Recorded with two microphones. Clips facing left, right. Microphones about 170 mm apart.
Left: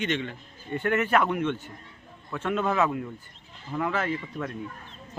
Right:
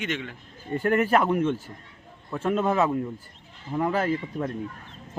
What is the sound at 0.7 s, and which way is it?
A man's voice, 35° right (ahead or behind).